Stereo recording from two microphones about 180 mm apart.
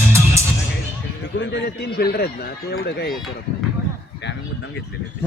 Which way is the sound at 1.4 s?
70° left (ahead or behind).